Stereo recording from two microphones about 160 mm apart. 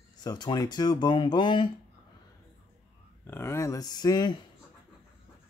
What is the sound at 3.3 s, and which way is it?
Speech, 15° left (ahead or behind).